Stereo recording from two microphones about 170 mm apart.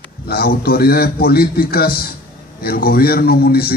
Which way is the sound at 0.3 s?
65° left (ahead or behind).